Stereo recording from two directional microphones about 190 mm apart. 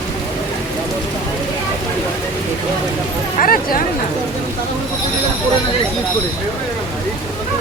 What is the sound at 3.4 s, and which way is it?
Speech, 45° left (ahead or behind).